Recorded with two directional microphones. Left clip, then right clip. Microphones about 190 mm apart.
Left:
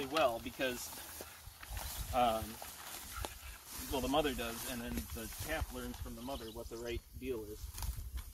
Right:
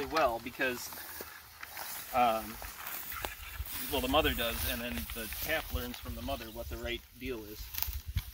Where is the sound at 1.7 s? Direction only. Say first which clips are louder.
Right 4 dB; 10° left (ahead or behind).